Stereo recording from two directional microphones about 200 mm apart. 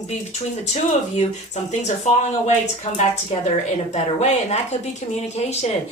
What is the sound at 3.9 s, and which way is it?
Speech, 35° left (ahead or behind).